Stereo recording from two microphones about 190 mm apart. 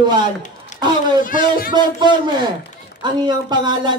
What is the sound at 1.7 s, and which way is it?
A man's voice, 25° right (ahead or behind).